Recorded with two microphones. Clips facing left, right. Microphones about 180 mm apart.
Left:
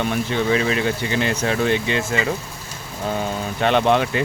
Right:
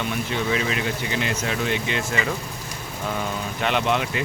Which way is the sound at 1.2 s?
30° left (ahead or behind).